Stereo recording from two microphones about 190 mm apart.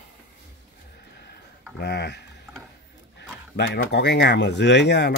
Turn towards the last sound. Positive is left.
turn(degrees=65)  # may be behind; listen again after turning